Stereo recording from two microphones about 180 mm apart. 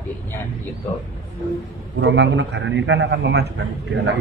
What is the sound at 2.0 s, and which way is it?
A man's voice, 85° right.